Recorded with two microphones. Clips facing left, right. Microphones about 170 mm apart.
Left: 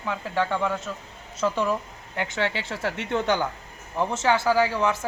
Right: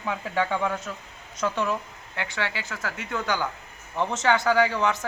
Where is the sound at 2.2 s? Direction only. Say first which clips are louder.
Left 4 dB; 20° left (ahead or behind).